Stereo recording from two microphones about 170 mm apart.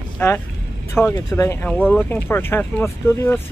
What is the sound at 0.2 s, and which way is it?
Speech, 15° left (ahead or behind).